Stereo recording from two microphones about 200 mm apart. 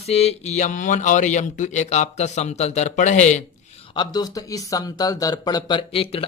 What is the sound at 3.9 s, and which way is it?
Speech, 20° left (ahead or behind).